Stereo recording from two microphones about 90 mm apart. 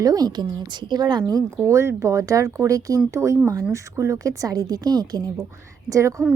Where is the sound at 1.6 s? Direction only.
35° right (ahead or behind); by 5.4 s 50° right (ahead or behind).